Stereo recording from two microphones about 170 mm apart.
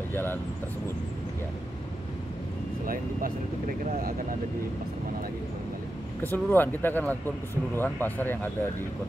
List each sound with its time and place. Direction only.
0.1 s speech: 10° left (ahead or behind)
2.9 s speech: 55° right (ahead or behind)
6.2 s speech: 10° left (ahead or behind)